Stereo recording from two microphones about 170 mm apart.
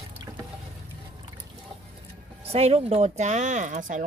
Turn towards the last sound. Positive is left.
turn(degrees=-45)  # may be behind; listen again after turning